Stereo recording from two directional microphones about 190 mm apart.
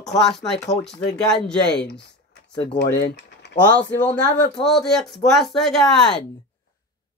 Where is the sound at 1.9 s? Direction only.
65° left (ahead or behind).